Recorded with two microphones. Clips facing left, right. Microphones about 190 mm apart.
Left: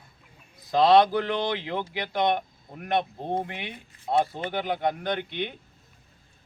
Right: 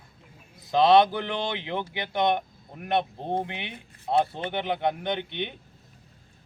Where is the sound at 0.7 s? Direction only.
Centre (ahead or behind).